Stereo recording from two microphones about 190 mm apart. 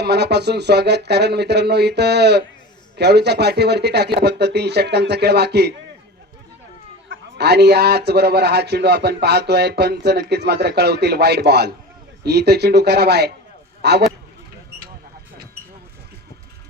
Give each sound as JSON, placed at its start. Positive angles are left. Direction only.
{"t": 0.0, "sound": "a man's voice", "side_deg": -60}
{"t": 7.3, "sound": "a man's voice", "side_deg": -60}